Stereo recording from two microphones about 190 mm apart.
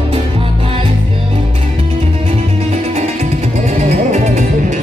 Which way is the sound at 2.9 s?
35° right (ahead or behind).